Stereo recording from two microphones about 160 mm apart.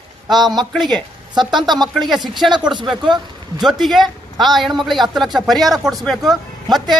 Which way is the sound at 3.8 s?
Centre (ahead or behind).